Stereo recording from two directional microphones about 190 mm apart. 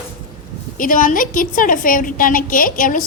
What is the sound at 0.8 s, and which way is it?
A woman's voice, 45° left (ahead or behind).